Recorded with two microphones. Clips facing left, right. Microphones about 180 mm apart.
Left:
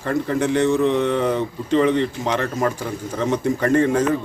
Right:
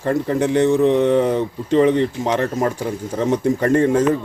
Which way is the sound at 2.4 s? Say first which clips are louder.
Right 2 dB; 25° right (ahead or behind).